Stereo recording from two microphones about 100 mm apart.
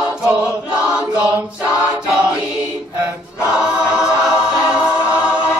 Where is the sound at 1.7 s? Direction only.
10° right (ahead or behind).